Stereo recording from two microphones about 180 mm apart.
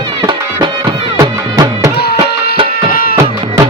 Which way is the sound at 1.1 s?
20° right (ahead or behind).